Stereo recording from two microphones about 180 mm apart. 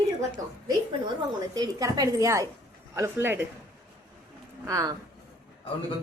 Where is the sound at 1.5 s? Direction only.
20° right (ahead or behind).